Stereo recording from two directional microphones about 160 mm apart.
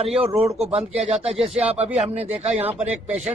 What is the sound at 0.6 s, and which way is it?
Speech, 40° right (ahead or behind).